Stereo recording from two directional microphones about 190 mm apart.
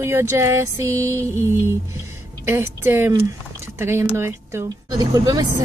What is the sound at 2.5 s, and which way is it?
Speech, 10° right (ahead or behind).